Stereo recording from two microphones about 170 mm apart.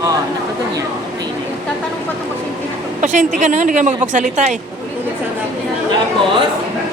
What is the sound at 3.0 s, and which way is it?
A woman's voice, 50° right (ahead or behind).